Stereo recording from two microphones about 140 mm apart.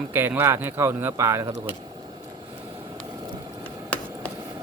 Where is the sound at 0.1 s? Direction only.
15° right (ahead or behind).